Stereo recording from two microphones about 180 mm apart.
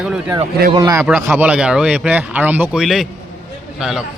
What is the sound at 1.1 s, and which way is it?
A man's voice, 5° right (ahead or behind).